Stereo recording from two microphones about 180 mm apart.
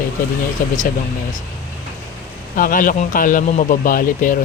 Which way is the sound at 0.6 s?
50° left (ahead or behind).